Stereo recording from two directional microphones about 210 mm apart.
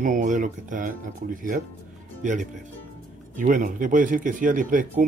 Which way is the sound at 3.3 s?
40° right (ahead or behind).